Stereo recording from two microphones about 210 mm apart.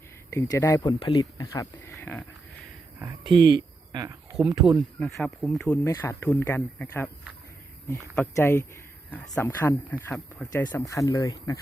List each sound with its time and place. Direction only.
0.3 s speech: 15° left (ahead or behind)
3.2 s speech: 20° right (ahead or behind)
4.4 s speech: centre (ahead or behind)
8.1 s speech: 10° left (ahead or behind)